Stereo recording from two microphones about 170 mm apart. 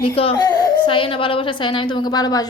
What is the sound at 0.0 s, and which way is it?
A child's voice, 30° left (ahead or behind).